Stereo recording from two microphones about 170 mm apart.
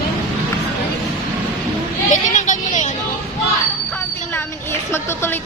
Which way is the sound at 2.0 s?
45° left (ahead or behind).